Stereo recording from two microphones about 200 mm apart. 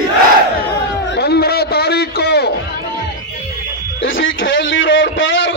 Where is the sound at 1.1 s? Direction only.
55° left (ahead or behind).